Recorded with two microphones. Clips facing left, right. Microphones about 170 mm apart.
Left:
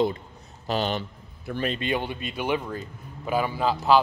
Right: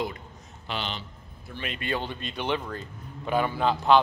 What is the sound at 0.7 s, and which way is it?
A man's voice, 45° left (ahead or behind).